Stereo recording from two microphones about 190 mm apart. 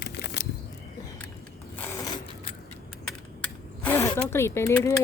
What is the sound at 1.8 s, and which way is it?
Mechanisms, 20° left (ahead or behind).